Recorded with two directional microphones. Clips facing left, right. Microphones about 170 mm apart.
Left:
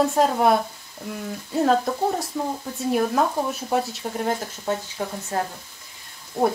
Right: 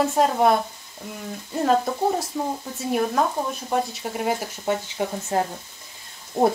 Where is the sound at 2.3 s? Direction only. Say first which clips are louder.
Even; 5° right (ahead or behind).